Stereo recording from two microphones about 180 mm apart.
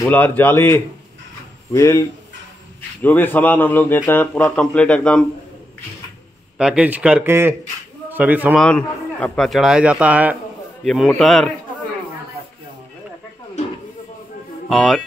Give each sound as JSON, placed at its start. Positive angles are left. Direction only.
{"t": 0.0, "sound": "a man's voice", "side_deg": 10}
{"t": 6.6, "sound": "a man's voice", "side_deg": -5}
{"t": 8.5, "sound": "a man's voice", "side_deg": 5}
{"t": 14.7, "sound": "a man's voice", "side_deg": 0}